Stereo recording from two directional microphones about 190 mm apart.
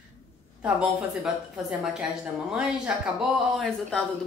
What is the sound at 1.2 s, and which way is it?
Speech, 5° right (ahead or behind).